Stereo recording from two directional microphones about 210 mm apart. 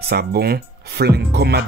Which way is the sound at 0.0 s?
50° right (ahead or behind).